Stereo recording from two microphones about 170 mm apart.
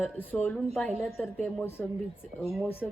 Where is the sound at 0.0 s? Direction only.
10° left (ahead or behind).